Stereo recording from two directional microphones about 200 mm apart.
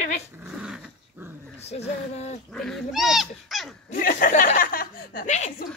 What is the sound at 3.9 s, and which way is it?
A woman's voice, 45° left (ahead or behind).